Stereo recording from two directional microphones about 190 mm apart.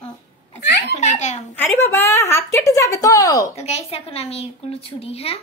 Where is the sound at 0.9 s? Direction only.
40° left (ahead or behind).